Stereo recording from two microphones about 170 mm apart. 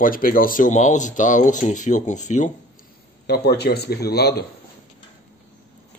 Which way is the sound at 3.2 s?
70° left (ahead or behind).